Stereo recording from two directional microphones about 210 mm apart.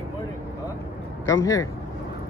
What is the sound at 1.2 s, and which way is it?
Speech, 15° left (ahead or behind).